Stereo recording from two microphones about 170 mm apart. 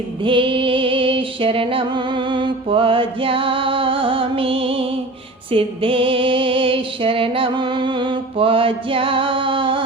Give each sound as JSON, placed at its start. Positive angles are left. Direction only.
{"t": 0.2, "sound": "music", "side_deg": -30}